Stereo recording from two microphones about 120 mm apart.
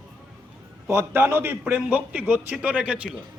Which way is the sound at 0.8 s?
20° right (ahead or behind).